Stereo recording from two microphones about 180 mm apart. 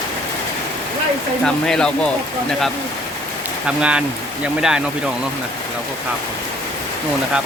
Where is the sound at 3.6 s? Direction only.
5° right (ahead or behind).